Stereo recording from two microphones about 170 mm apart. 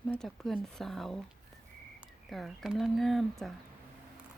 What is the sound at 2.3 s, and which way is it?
Speech, centre (ahead or behind).